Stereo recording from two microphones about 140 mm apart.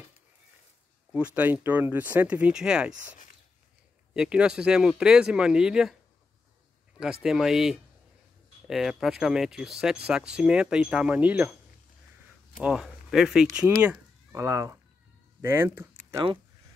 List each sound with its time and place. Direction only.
1.1 s speech: 10° right (ahead or behind)
4.1 s speech: 5° right (ahead or behind)
7.2 s speech: centre (ahead or behind)
12.5 s speech: 5° right (ahead or behind)
13.8 s speech: 20° right (ahead or behind)